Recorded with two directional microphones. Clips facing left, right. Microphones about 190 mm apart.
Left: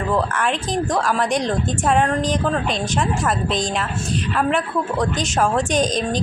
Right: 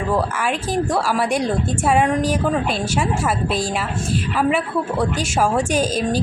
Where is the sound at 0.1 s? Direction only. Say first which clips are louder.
Even; 10° right (ahead or behind).